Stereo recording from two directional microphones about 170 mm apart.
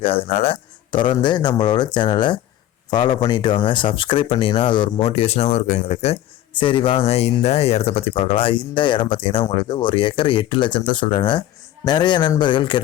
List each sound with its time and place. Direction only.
0.0 s speech: 35° left (ahead or behind)